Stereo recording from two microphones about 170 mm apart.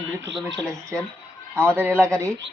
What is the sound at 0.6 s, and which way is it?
Speech, 5° left (ahead or behind).